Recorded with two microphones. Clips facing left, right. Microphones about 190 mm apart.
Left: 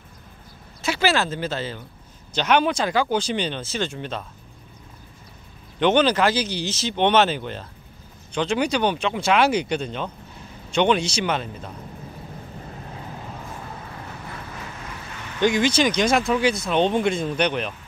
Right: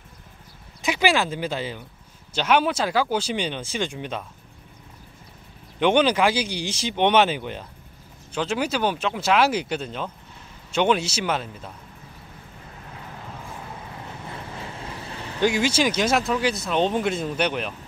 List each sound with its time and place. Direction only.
0.8 s speech: 15° right (ahead or behind)
5.8 s speech: 10° right (ahead or behind)
13.9 s vehicle: 25° right (ahead or behind)
15.4 s speech: 10° right (ahead or behind)